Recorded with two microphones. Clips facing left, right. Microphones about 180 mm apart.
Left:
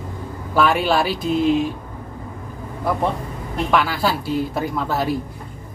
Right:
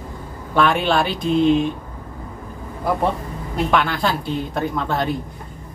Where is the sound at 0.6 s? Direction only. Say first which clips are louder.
Even; 5° left (ahead or behind).